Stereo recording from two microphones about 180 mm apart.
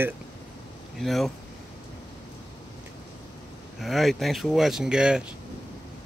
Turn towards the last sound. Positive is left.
turn(degrees=-5)  # may be behind; listen again after turning